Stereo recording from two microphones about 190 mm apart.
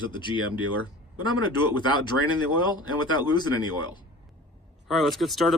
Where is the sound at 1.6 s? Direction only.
25° left (ahead or behind).